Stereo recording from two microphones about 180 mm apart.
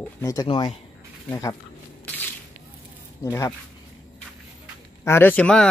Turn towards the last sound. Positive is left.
turn(degrees=5)  # may be behind; listen again after turning